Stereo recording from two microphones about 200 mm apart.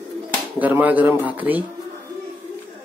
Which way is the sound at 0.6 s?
10° right (ahead or behind).